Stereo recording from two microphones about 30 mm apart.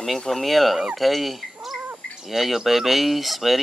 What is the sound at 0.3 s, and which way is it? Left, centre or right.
Speech, centre.